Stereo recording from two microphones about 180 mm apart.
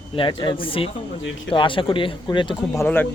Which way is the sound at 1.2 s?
90° left.